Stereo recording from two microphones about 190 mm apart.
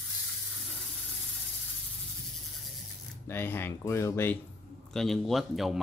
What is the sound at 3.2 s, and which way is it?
Speech, 10° left (ahead or behind).